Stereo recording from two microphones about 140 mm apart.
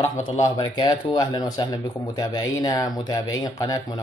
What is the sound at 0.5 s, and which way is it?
Speech, 35° left (ahead or behind).